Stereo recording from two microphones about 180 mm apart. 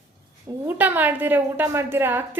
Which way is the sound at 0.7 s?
10° right (ahead or behind).